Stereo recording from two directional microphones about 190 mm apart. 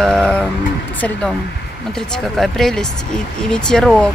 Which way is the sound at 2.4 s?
Centre (ahead or behind).